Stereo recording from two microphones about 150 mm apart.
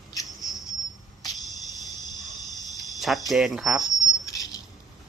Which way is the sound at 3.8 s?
25° left (ahead or behind).